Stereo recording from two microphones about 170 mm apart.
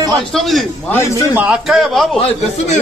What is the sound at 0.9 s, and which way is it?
Speech, 15° left (ahead or behind).